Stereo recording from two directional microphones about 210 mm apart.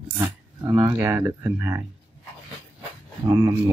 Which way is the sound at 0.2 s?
10° right (ahead or behind).